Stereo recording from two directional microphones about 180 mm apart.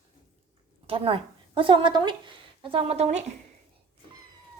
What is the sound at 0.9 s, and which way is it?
A woman's voice, 30° right (ahead or behind).